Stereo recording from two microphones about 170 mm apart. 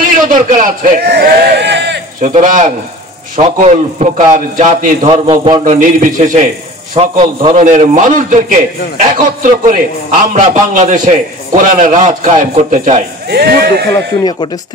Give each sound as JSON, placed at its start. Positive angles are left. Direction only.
{"t": 0.0, "sound": "a man's voice", "side_deg": -55}
{"t": 2.2, "sound": "a man's voice", "side_deg": -50}
{"t": 5.0, "sound": "a sound", "side_deg": -30}
{"t": 5.7, "sound": "a man's voice", "side_deg": -50}
{"t": 7.0, "sound": "a man's voice", "side_deg": -35}
{"t": 7.5, "sound": "a man's voice", "side_deg": -50}
{"t": 13.3, "sound": "speech", "side_deg": -70}